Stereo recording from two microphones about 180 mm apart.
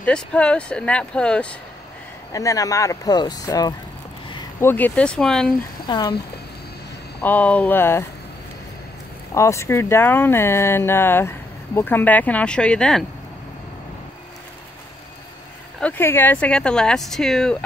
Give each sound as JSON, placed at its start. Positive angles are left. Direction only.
{"t": 0.0, "sound": "speech", "side_deg": 5}
{"t": 2.3, "sound": "speech", "side_deg": 20}
{"t": 5.9, "sound": "speech", "side_deg": 25}
{"t": 7.2, "sound": "speech", "side_deg": 10}
{"t": 9.3, "sound": "speech", "side_deg": 15}
{"t": 15.8, "sound": "speech", "side_deg": 10}